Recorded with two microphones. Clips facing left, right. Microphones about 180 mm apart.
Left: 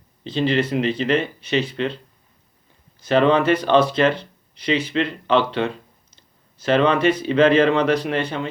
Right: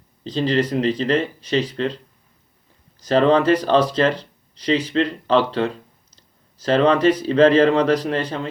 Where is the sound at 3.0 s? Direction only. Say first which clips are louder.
Right 1 dB; 35° right (ahead or behind).